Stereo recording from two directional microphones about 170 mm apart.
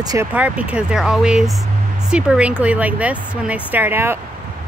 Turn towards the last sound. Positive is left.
turn(degrees=-15)  # may be behind; listen again after turning